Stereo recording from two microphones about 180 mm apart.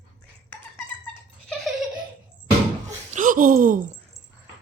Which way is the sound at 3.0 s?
45° right (ahead or behind).